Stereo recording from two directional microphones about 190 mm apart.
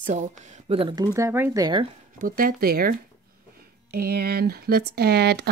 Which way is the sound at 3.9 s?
55° right (ahead or behind).